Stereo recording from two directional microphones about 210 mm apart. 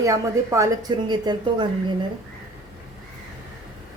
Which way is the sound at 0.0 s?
15° right (ahead or behind).